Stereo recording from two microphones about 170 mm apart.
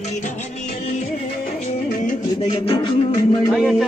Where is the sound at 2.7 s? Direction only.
25° left (ahead or behind).